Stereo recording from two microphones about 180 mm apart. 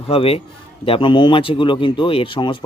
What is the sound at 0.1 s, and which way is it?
A man's voice, 30° left (ahead or behind).